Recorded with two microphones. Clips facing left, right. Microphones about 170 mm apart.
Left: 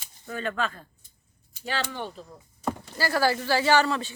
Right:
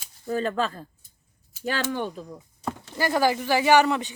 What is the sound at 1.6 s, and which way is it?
Speech, 45° right (ahead or behind).